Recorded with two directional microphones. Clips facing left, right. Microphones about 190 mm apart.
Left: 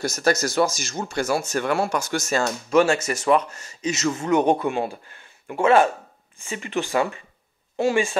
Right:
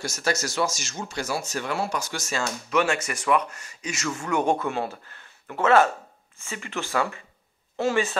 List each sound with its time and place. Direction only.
0.0 s speech: 40° left (ahead or behind)
0.3 s speech: 55° left (ahead or behind); by 2.9 s 40° left (ahead or behind)
2.9 s speech: 25° left (ahead or behind)